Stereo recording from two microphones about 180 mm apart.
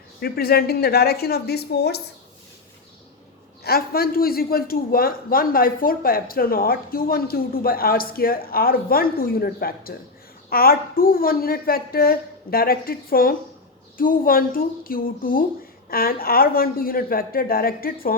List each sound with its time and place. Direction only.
0.2 s a man's voice: 60° left (ahead or behind)
3.6 s a man's voice: 55° left (ahead or behind)